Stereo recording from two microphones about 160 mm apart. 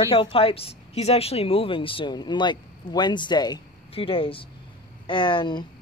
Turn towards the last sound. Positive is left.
turn(degrees=30)  # may be behind; listen again after turning